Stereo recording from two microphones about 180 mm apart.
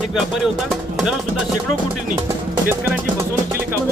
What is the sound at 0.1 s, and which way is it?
Speech, centre (ahead or behind).